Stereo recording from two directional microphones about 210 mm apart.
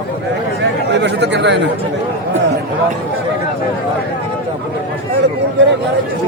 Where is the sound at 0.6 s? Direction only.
55° right (ahead or behind).